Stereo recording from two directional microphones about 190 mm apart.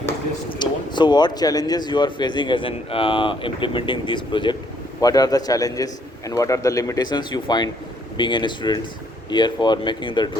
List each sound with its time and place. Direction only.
0.6 s speech: 25° left (ahead or behind)